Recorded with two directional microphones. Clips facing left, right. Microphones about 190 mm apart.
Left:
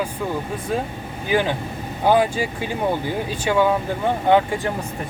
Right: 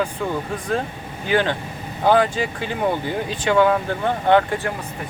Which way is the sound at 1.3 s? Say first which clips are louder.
Even; 10° left (ahead or behind).